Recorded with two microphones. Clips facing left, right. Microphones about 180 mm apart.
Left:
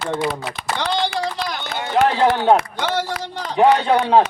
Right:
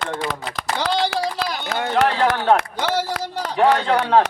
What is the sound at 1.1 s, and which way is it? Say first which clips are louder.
Run: even; 5° right (ahead or behind).